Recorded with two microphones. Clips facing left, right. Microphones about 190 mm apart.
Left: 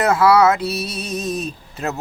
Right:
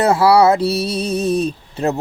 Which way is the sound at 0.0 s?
30° right (ahead or behind).